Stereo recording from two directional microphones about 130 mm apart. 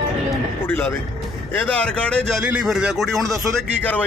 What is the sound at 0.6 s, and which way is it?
Speech, 15° left (ahead or behind).